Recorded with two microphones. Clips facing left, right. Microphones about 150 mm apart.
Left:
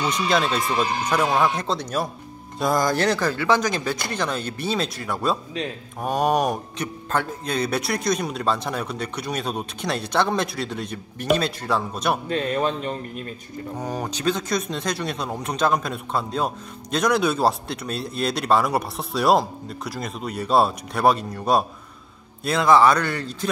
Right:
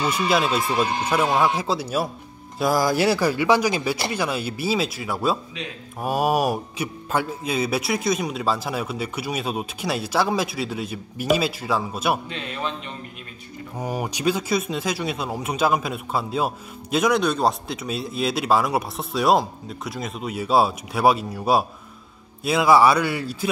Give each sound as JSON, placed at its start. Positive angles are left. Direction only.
{"t": 0.0, "sound": "speech", "side_deg": -5}
{"t": 12.3, "sound": "speech", "side_deg": 45}
{"t": 13.7, "sound": "speech", "side_deg": -10}